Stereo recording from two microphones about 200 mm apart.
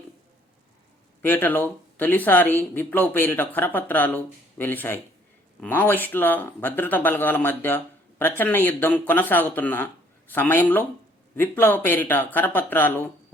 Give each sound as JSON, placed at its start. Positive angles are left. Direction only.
{"t": 1.2, "sound": "speech", "side_deg": 10}